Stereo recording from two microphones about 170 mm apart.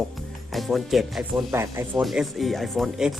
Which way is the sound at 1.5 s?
15° right (ahead or behind).